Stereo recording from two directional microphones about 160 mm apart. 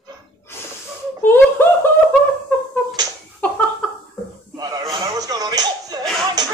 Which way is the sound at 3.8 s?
5° left (ahead or behind).